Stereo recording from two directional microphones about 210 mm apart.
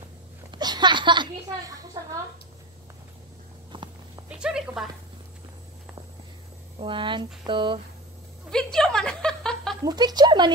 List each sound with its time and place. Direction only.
0.5 s a sound: 20° right (ahead or behind)
3.7 s a sound: 25° right (ahead or behind)
4.3 s speech: 5° right (ahead or behind)
6.8 s speech: 25° right (ahead or behind)
8.5 s a woman's voice: 5° left (ahead or behind)
9.8 s speech: 20° right (ahead or behind)